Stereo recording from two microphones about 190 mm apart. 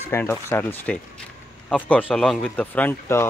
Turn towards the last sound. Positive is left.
turn(degrees=10)  # may be behind; listen again after turning